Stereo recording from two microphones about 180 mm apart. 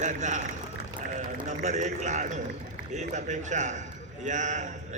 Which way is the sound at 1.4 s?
40° right (ahead or behind).